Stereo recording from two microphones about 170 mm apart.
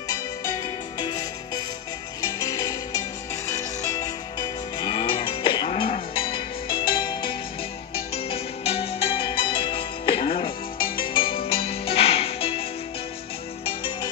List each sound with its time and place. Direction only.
0.1 s music: 20° left (ahead or behind)